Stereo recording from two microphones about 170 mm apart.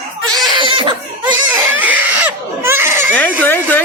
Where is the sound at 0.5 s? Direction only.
30° right (ahead or behind).